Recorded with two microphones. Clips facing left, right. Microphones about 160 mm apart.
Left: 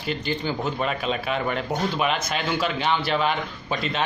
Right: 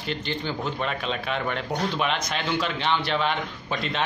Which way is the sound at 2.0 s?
5° left (ahead or behind).